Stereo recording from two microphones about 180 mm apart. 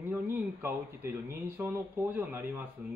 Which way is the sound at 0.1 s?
10° right (ahead or behind).